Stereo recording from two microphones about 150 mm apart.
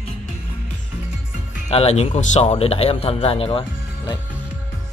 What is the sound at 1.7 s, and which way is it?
Speech, 45° left (ahead or behind).